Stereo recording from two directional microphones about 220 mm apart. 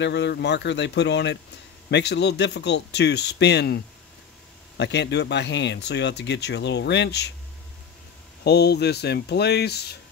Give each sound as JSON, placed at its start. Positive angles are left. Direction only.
{"t": 0.0, "sound": "speech", "side_deg": 50}
{"t": 8.5, "sound": "speech", "side_deg": 50}